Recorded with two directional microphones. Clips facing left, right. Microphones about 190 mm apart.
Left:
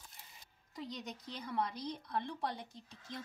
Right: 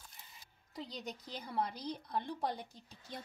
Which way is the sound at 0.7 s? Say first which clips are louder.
Even; 30° right (ahead or behind).